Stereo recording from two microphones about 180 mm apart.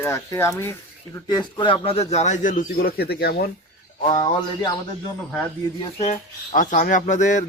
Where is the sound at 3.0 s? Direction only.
65° left (ahead or behind).